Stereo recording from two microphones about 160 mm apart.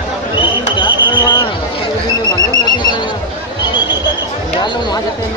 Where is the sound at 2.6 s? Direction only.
25° left (ahead or behind).